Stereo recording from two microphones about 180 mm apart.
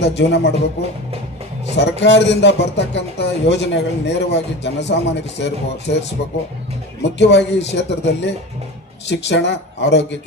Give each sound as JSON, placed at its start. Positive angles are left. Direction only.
{"t": 0.0, "sound": "speech", "side_deg": 70}
{"t": 1.7, "sound": "speech", "side_deg": 75}
{"t": 7.0, "sound": "speech", "side_deg": 75}